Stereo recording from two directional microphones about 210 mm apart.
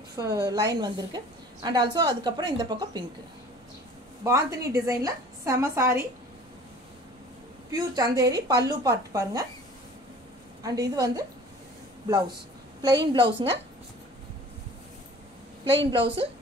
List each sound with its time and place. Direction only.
0.1 s a woman's voice: 15° right (ahead or behind)
4.2 s a woman's voice: 15° right (ahead or behind)
7.7 s a woman's voice: 15° right (ahead or behind)
10.6 s a woman's voice: 15° right (ahead or behind)
13.1 s a woman's voice: 25° right (ahead or behind)
15.8 s a woman's voice: 25° right (ahead or behind)